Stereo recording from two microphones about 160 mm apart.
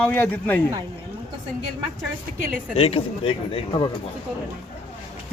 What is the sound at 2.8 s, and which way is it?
Speech, 35° left (ahead or behind).